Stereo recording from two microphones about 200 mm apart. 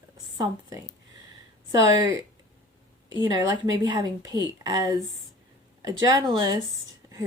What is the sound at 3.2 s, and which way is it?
Speech, 15° right (ahead or behind).